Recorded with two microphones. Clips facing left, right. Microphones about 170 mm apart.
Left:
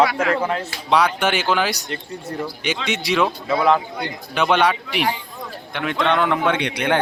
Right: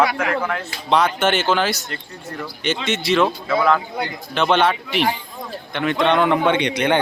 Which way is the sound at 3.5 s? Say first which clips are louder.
Even; 20° left (ahead or behind).